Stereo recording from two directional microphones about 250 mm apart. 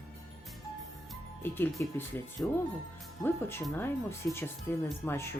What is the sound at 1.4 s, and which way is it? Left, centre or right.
Speech, centre.